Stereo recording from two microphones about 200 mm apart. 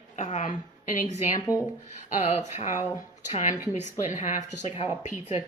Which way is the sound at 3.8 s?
35° left (ahead or behind).